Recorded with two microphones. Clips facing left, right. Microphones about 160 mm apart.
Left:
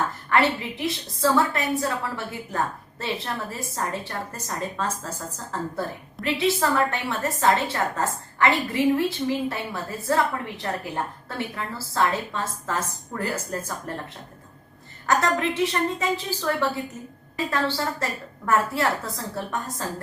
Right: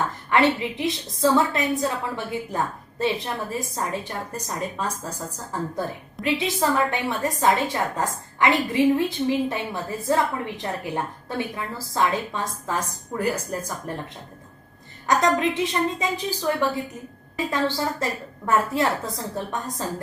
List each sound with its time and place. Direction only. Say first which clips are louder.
0.3 s a woman's voice: right 3 dB; 20° right (ahead or behind)
15.0 s a woman's voice: right 2 dB; 20° right (ahead or behind)